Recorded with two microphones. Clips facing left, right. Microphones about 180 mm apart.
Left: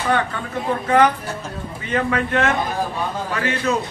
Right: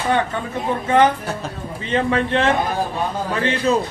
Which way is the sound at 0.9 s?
25° right (ahead or behind).